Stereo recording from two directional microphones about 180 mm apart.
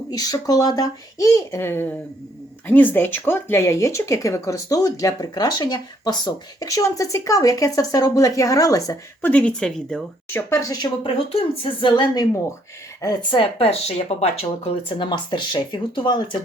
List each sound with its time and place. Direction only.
0.1 s speech: 20° left (ahead or behind)
9.3 s speech: 5° left (ahead or behind)
10.5 s speech: 20° left (ahead or behind)
11.3 s speech: 30° left (ahead or behind)